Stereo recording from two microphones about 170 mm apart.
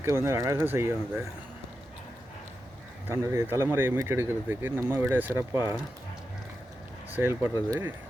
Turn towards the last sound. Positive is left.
turn(degrees=-10)  # may be behind; listen again after turning